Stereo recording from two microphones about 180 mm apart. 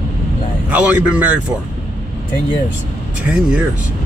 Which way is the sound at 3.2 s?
5° right (ahead or behind).